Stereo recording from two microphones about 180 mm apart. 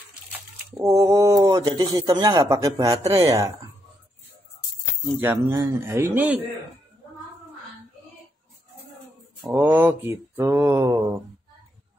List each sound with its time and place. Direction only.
0.8 s speech: 15° right (ahead or behind)
5.2 s mantra: 10° right (ahead or behind)
9.5 s mantra: 10° right (ahead or behind)